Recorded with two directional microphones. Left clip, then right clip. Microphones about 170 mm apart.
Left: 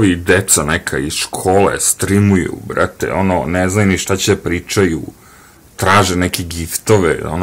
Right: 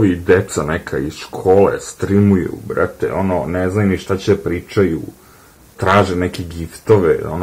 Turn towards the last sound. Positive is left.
turn(degrees=40)  # may be behind; listen again after turning